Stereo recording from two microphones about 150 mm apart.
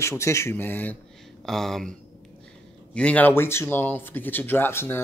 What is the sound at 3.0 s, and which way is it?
Speech, 10° left (ahead or behind).